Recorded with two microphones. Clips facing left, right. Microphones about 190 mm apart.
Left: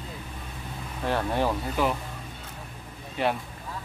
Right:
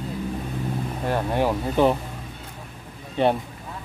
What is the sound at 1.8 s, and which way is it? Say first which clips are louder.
Speech: right 8 dB; 25° right (ahead or behind).